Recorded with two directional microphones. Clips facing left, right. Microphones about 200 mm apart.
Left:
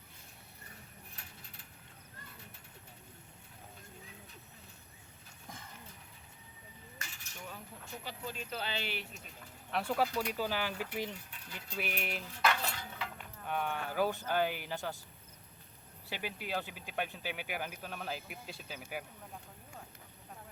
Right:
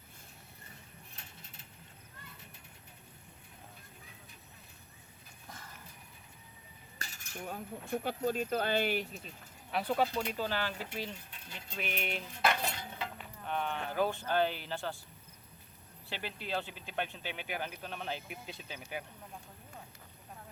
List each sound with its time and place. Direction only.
7.0 s speech: 45° right (ahead or behind)
9.7 s a sound: centre (ahead or behind)
10.3 s speech: 10° left (ahead or behind)
11.3 s speech: 25° right (ahead or behind)
11.8 s a sound: 5° left (ahead or behind)
12.3 s cutlery: 20° right (ahead or behind)
13.1 s sheep: 5° left (ahead or behind)
13.9 s speech: 10° left (ahead or behind)
16.0 s speech: 10° left (ahead or behind)